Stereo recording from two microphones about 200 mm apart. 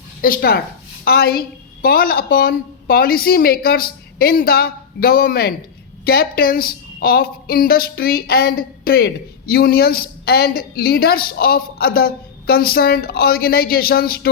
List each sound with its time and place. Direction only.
0.2 s a woman's voice: 45° left (ahead or behind)